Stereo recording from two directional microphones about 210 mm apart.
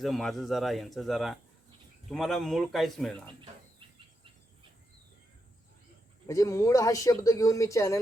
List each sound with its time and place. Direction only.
0.0 s speech: centre (ahead or behind)
6.2 s speech: 15° left (ahead or behind)